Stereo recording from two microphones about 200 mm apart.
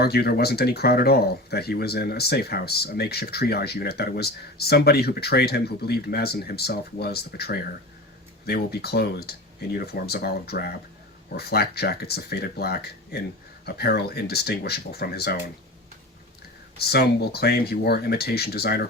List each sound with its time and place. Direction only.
0.0 s speech: 50° left (ahead or behind)
16.7 s speech: 50° left (ahead or behind)